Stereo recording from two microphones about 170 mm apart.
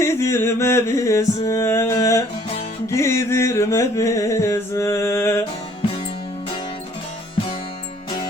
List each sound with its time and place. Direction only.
0.0 s music: 15° left (ahead or behind)